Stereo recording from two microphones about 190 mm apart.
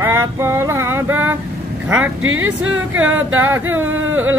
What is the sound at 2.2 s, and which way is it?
Speech, 90° right.